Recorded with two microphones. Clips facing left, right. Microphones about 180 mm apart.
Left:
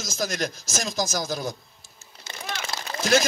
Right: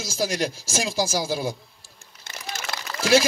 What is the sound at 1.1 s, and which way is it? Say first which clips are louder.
Speech: right 3 dB; 10° right (ahead or behind).